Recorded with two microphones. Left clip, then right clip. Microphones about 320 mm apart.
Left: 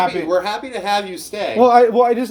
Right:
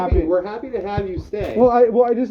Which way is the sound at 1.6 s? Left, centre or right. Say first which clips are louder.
Left 3 dB; left.